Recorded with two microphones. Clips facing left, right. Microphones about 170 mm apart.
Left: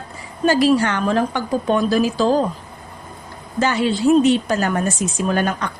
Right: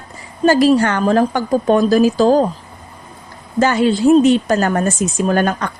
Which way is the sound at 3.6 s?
45° right (ahead or behind).